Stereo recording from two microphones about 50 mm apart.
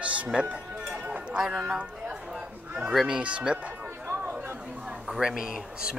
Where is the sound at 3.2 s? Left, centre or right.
Right.